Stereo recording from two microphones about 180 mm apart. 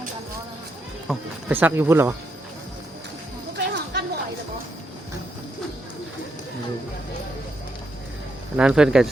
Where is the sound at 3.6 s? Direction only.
70° right (ahead or behind).